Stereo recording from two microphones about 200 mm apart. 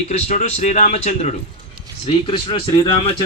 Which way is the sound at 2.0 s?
25° left (ahead or behind).